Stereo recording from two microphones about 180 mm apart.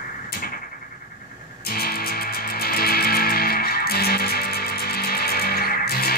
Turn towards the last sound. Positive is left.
turn(degrees=55)  # may be behind; listen again after turning